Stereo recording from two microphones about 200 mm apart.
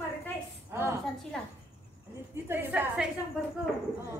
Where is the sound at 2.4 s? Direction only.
5° right (ahead or behind).